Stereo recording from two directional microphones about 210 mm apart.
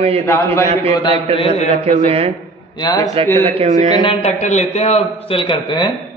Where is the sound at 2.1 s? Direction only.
30° right (ahead or behind).